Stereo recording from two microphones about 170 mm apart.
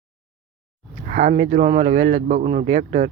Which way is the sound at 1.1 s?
60° right (ahead or behind).